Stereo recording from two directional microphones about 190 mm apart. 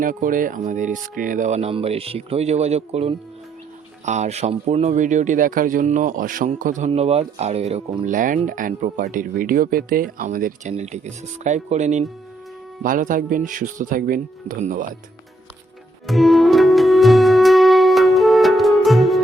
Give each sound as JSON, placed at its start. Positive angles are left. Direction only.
{"t": 0.0, "sound": "speech", "side_deg": -45}
{"t": 16.0, "sound": "music", "side_deg": 0}